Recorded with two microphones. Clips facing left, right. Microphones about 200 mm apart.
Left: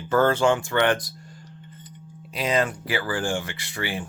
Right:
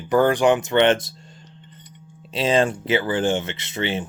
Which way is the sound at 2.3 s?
25° right (ahead or behind).